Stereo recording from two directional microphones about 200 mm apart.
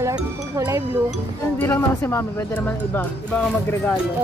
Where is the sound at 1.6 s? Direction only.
10° left (ahead or behind).